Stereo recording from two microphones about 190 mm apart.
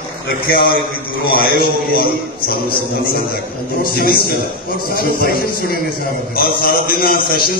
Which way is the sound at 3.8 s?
50° left (ahead or behind).